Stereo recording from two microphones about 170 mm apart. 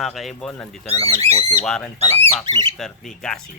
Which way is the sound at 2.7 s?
Centre (ahead or behind).